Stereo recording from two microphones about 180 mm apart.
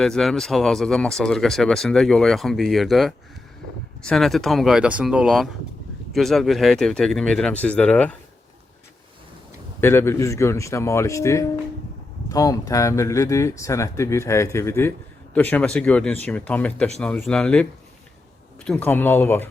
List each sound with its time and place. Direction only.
0.0 s speech: centre (ahead or behind)
9.8 s speech: 15° left (ahead or behind)